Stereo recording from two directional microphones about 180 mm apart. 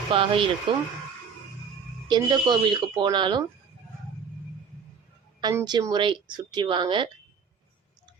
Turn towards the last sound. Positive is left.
turn(degrees=-30)  # may be behind; listen again after turning